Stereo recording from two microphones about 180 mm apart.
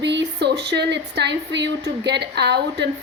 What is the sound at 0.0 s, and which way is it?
Speech, 75° right (ahead or behind).